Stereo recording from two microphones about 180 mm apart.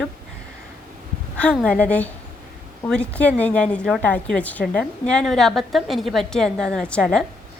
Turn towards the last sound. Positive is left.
turn(degrees=5)  # may be behind; listen again after turning